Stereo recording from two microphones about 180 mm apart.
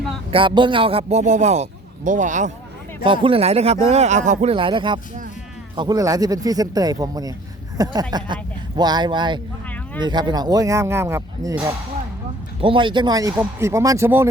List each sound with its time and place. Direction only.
0.3 s speech: 30° right (ahead or behind); by 2.5 s 45° right (ahead or behind)
3.0 s speech: 30° right (ahead or behind)
4.5 s speech: 25° right (ahead or behind)
12.6 s speech: 25° right (ahead or behind)